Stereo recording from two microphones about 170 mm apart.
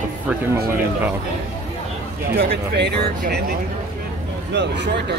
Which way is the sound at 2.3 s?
75° right (ahead or behind).